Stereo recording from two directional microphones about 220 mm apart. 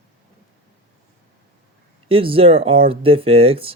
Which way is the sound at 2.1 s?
25° right (ahead or behind).